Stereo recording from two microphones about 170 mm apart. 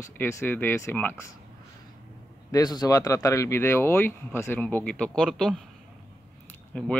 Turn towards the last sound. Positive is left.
turn(degrees=5)  # may be behind; listen again after turning